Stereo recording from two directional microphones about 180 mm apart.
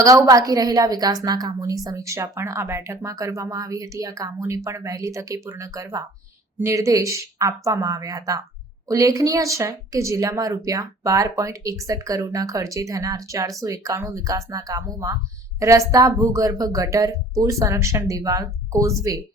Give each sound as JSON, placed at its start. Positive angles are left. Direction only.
{"t": 0.0, "sound": "speech", "side_deg": -20}